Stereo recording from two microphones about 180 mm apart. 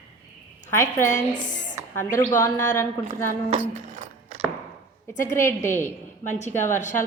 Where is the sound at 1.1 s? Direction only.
45° left (ahead or behind).